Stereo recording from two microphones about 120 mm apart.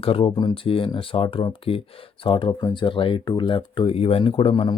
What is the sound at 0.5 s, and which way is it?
Speech, 50° left (ahead or behind).